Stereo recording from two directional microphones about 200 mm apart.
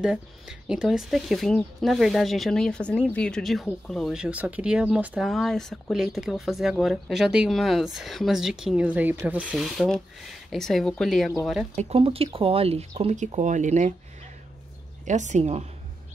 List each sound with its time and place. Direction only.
0.0 s speech: 5° right (ahead or behind)
11.7 s speech: 30° right (ahead or behind)
15.0 s speech: 35° right (ahead or behind)